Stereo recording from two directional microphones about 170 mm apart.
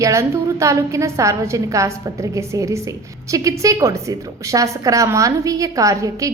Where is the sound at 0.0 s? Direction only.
15° right (ahead or behind).